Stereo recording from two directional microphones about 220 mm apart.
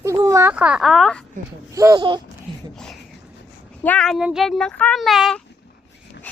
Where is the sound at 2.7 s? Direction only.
Centre (ahead or behind).